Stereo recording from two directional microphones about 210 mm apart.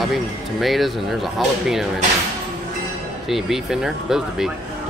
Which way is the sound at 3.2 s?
Centre (ahead or behind).